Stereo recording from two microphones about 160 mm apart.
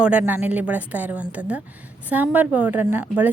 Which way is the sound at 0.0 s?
10° right (ahead or behind).